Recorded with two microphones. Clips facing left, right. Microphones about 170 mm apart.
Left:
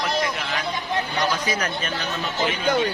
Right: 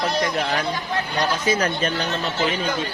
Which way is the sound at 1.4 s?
30° right (ahead or behind).